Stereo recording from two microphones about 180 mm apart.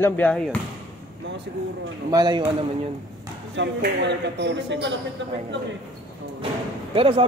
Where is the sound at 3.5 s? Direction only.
70° right (ahead or behind).